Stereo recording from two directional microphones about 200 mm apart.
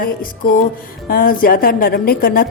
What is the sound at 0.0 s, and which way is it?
A woman's voice, 45° left (ahead or behind).